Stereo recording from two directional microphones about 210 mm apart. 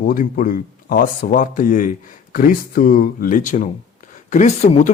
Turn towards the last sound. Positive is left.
turn(degrees=35)  # may be behind; listen again after turning